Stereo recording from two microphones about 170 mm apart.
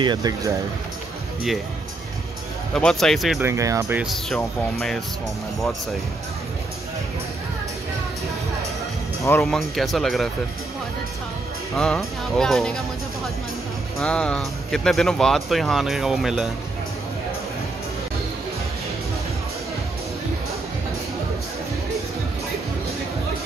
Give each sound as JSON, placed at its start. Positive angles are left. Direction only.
{"t": 0.0, "sound": "speech", "side_deg": -25}
{"t": 2.7, "sound": "speech", "side_deg": 5}
{"t": 3.3, "sound": "speech", "side_deg": -15}
{"t": 4.0, "sound": "speech", "side_deg": 0}
{"t": 9.4, "sound": "speech", "side_deg": 0}
{"t": 11.7, "sound": "speech", "side_deg": 0}